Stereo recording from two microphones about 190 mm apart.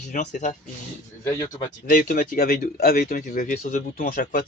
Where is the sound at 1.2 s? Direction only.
15° left (ahead or behind).